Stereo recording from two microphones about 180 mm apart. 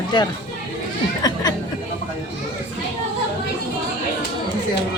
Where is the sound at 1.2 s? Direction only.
20° left (ahead or behind).